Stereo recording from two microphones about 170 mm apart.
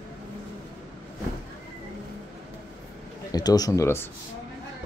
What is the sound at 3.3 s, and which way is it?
Speech, 25° left (ahead or behind).